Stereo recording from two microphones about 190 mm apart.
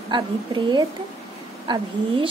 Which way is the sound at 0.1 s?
25° right (ahead or behind).